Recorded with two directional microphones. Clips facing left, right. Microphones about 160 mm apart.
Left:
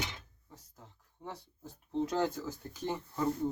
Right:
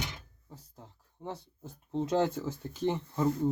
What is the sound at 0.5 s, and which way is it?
Speech, 30° right (ahead or behind).